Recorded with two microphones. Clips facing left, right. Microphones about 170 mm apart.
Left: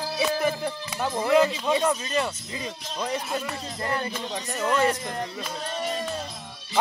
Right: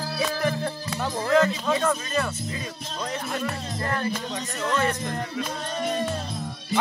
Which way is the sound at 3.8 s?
15° left (ahead or behind).